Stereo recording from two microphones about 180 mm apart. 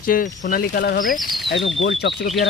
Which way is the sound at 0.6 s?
60° left (ahead or behind).